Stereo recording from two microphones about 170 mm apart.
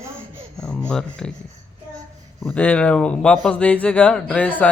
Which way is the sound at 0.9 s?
5° left (ahead or behind).